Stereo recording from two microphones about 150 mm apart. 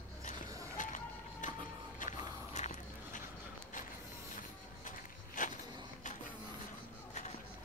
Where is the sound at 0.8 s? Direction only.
60° left (ahead or behind).